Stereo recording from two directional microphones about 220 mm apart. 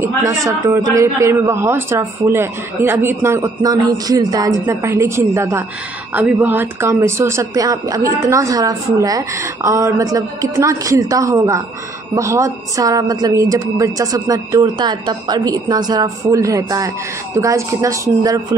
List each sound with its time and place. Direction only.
0.0 s a woman's voice: 15° right (ahead or behind)